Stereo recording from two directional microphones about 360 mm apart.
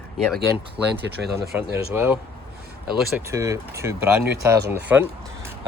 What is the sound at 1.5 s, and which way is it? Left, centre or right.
Speech, centre.